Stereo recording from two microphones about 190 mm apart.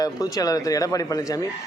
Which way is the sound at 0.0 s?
20° left (ahead or behind).